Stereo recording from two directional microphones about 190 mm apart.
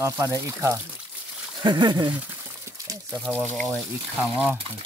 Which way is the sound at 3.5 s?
5° left (ahead or behind).